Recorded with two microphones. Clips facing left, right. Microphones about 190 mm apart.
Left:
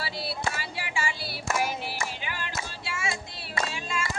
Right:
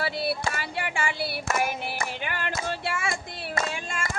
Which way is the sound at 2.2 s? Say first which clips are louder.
Right 5 dB; 55° right (ahead or behind).